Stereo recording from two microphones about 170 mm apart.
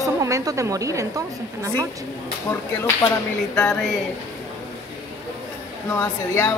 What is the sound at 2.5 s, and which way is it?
Speech, 10° left (ahead or behind).